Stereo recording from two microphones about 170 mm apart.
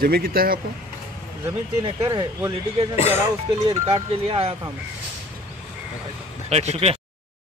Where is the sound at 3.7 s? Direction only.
30° right (ahead or behind).